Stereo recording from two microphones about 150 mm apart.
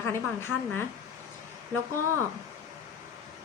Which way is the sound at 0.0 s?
15° left (ahead or behind).